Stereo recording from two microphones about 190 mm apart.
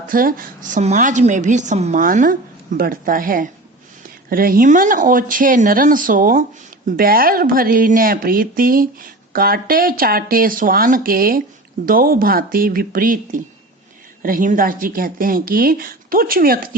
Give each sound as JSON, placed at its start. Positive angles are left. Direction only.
{"t": 0.1, "sound": "speech", "side_deg": -50}